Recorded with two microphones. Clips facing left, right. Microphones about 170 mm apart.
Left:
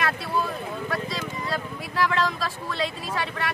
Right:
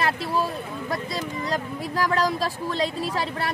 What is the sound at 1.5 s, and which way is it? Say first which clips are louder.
Speech: right 4 dB; 40° right (ahead or behind).